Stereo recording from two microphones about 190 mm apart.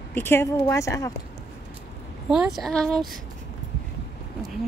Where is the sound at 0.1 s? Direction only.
10° left (ahead or behind).